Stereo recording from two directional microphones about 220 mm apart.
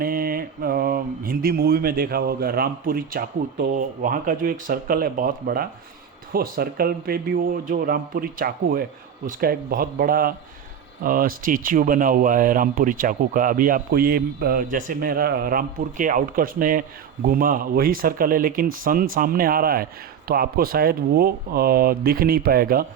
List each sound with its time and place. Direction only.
0.0 s mantra: 40° right (ahead or behind)
6.3 s speech: 45° right (ahead or behind)